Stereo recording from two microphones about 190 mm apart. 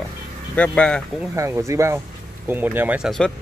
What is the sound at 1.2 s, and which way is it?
Speech, 15° right (ahead or behind).